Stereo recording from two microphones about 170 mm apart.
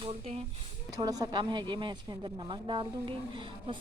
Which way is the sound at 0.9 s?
20° right (ahead or behind).